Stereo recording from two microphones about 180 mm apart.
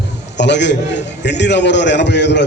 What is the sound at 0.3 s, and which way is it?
A man's voice, 75° left (ahead or behind).